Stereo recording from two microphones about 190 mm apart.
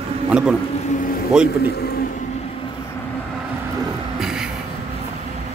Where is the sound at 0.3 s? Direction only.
5° right (ahead or behind).